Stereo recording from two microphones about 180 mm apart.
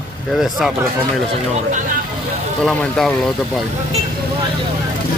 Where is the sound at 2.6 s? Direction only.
5° left (ahead or behind).